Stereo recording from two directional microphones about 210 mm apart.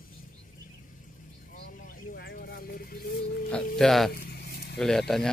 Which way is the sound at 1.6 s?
40° left (ahead or behind).